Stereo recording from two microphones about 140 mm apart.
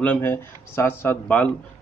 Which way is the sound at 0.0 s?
15° left (ahead or behind).